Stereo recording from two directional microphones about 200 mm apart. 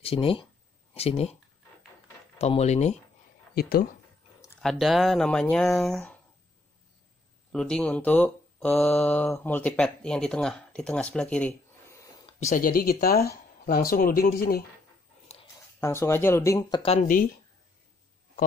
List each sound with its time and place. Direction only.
0.0 s speech: 30° left (ahead or behind)
2.3 s speech: 30° left (ahead or behind)
3.5 s speech: 50° left (ahead or behind)
4.6 s speech: centre (ahead or behind)
7.5 s speech: 5° left (ahead or behind)
12.4 s speech: 40° left (ahead or behind)
15.8 s speech: 15° left (ahead or behind)